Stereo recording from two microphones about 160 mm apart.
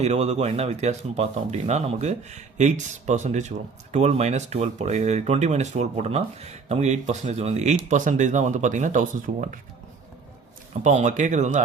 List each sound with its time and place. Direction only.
0.0 s speech: 40° right (ahead or behind)
10.8 s speech: 50° right (ahead or behind)